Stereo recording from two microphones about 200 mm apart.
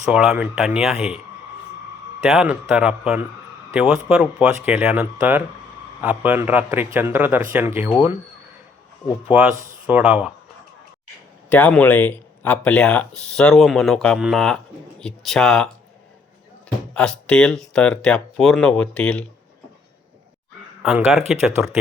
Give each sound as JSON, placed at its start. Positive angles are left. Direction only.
{"t": 0.1, "sound": "speech", "side_deg": -5}
{"t": 2.2, "sound": "a man's voice", "side_deg": -5}
{"t": 9.6, "sound": "speech", "side_deg": -40}
{"t": 9.8, "sound": "speech", "side_deg": -5}
{"t": 11.4, "sound": "speech", "side_deg": 10}
{"t": 16.9, "sound": "speech", "side_deg": 5}
{"t": 20.8, "sound": "speech", "side_deg": 0}